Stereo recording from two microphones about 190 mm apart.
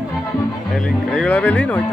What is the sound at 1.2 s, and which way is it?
Music, 5° left (ahead or behind).